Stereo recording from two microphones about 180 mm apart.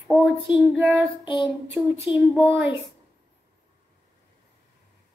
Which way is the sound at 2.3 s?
Centre (ahead or behind).